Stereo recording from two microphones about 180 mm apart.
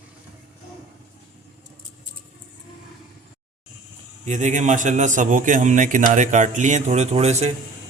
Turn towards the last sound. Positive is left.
turn(degrees=-40)  # may be behind; listen again after turning